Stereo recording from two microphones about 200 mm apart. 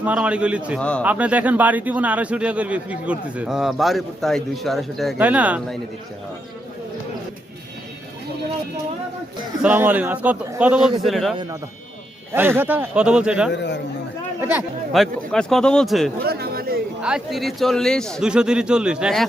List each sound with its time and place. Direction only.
0.0 s speech: 5° right (ahead or behind)
0.8 s a man's voice: 5° left (ahead or behind)
1.0 s speech: 5° right (ahead or behind)
9.6 s a man's voice: 10° right (ahead or behind)
12.3 s speech: 10° right (ahead or behind)
13.5 s a man's voice: 60° left (ahead or behind)
14.9 s a man's voice: centre (ahead or behind)
16.2 s a sound: 50° right (ahead or behind)
17.0 s a man's voice: 5° right (ahead or behind)